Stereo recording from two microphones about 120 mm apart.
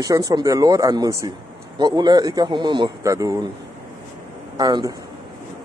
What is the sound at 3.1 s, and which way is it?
Speech, 30° right (ahead or behind).